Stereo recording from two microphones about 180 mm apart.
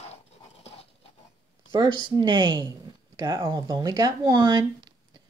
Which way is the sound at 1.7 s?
25° right (ahead or behind).